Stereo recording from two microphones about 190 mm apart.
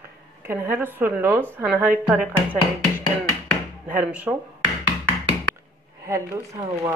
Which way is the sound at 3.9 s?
5° right (ahead or behind).